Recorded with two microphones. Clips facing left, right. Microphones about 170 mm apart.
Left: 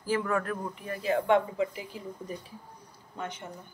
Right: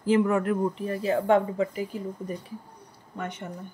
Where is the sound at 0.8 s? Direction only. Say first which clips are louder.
Right 3 dB; 30° right (ahead or behind).